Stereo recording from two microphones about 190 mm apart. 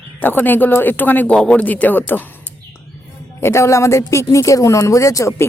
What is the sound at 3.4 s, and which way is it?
Speech, 15° left (ahead or behind).